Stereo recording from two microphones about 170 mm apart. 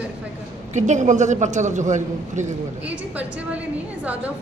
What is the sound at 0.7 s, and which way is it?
A man's voice, 45° right (ahead or behind).